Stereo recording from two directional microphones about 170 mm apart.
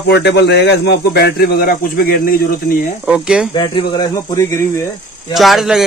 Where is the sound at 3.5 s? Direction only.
25° left (ahead or behind).